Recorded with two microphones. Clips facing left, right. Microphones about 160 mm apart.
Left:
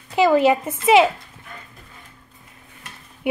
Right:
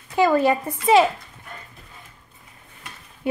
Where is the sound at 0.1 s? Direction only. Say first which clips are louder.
Left 2 dB; 20° left (ahead or behind).